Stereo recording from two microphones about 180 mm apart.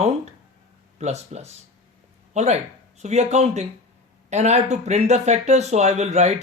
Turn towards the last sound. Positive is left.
turn(degrees=-40)  # may be behind; listen again after turning